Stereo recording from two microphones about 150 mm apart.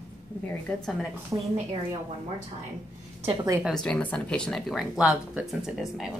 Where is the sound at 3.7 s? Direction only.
5° left (ahead or behind).